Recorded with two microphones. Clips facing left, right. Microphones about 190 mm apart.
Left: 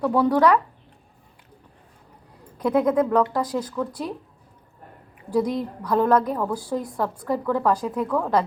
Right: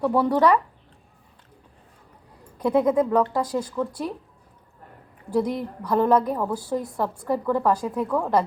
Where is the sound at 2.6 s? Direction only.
5° right (ahead or behind).